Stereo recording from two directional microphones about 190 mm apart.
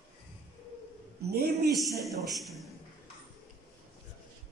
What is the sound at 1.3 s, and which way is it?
Speech, 55° right (ahead or behind).